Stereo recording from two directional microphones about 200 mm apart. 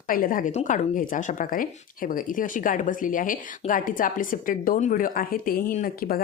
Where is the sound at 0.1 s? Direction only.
45° left (ahead or behind).